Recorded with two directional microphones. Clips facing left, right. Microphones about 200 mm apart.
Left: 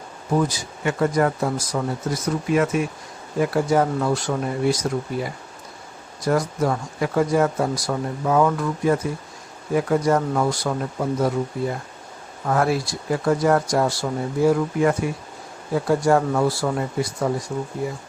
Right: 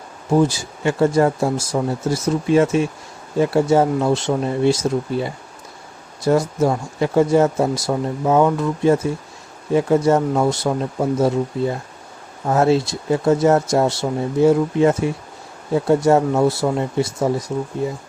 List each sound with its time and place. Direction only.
0.3 s speech: 25° right (ahead or behind)